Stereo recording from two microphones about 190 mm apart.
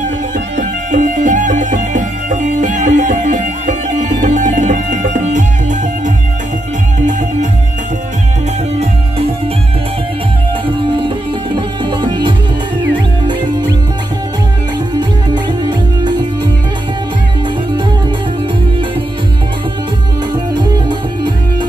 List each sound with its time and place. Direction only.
0.6 s music: 40° right (ahead or behind)
10.9 s music: 25° right (ahead or behind)